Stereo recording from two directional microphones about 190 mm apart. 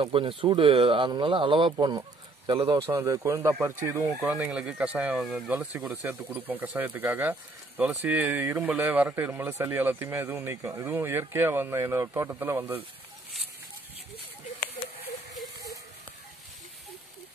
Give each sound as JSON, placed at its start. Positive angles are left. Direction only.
{"t": 0.0, "sound": "speech", "side_deg": -25}
{"t": 2.9, "sound": "speech", "side_deg": -15}